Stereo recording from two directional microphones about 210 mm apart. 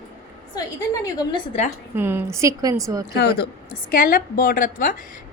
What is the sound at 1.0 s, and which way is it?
Speech, 20° left (ahead or behind).